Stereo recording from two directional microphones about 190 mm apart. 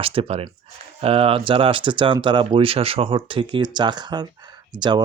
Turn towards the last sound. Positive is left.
turn(degrees=-20)  # may be behind; listen again after turning